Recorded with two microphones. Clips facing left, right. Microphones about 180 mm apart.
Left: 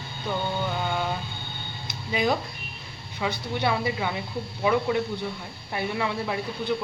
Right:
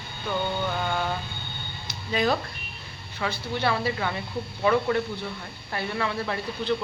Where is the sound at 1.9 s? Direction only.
15° left (ahead or behind).